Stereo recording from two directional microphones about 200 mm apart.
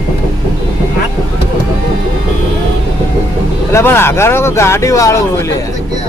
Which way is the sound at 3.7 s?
10° left (ahead or behind).